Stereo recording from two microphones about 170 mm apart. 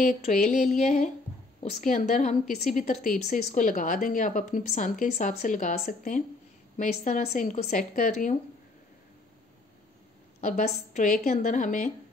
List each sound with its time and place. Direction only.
0.2 s speech: 45° left (ahead or behind)
10.4 s speech: 50° left (ahead or behind)